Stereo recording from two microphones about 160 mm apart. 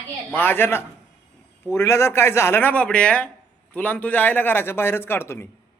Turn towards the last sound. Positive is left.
turn(degrees=15)  # may be behind; listen again after turning